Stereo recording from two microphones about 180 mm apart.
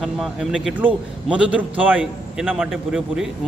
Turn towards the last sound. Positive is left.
turn(degrees=-5)  # may be behind; listen again after turning